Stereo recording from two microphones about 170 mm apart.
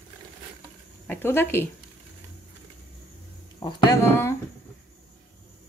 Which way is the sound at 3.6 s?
20° left (ahead or behind).